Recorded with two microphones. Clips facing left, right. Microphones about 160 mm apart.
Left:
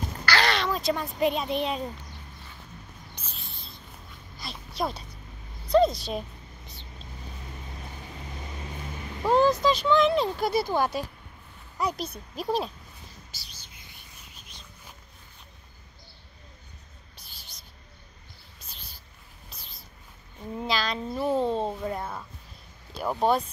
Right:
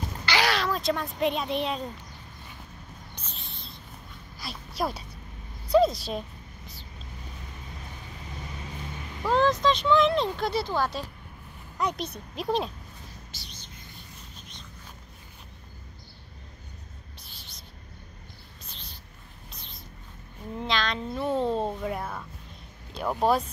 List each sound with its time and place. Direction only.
0.2 s a sound: 15° right (ahead or behind)
0.5 s speech: centre (ahead or behind)
3.3 s a sound: 5° left (ahead or behind)
5.7 s speech: 5° right (ahead or behind)
9.2 s speech: 10° left (ahead or behind)
11.8 s speech: centre (ahead or behind)
13.3 s whispering: 5° left (ahead or behind)
18.7 s a sound: 5° left (ahead or behind)
20.5 s speech: 5° left (ahead or behind)